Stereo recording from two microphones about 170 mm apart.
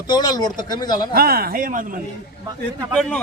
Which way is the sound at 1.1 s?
65° right (ahead or behind).